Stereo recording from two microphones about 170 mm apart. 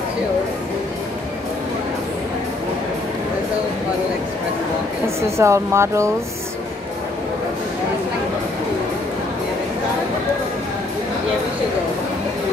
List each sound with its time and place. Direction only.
5.0 s speech: 15° right (ahead or behind)